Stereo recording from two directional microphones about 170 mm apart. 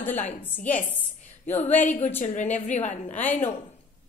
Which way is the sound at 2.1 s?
45° left (ahead or behind).